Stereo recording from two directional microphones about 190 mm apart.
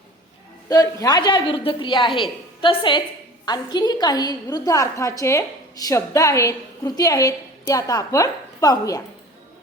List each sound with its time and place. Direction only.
0.7 s a woman's voice: 20° left (ahead or behind)